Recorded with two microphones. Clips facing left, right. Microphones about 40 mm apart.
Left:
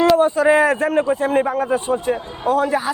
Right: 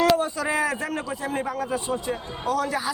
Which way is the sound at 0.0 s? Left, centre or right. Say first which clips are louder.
Left 7 dB; left.